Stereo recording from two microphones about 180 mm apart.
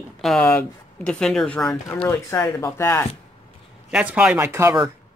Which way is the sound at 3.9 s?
5° right (ahead or behind).